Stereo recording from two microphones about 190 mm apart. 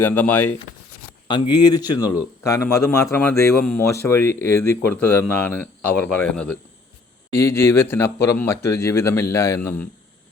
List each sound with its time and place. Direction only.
0.0 s speech: 10° left (ahead or behind)
1.3 s speech: 25° left (ahead or behind)